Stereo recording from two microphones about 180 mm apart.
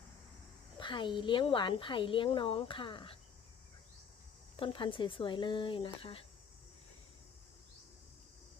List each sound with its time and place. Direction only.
0.8 s a woman's voice: 25° left (ahead or behind)
4.5 s a woman's voice: 30° left (ahead or behind)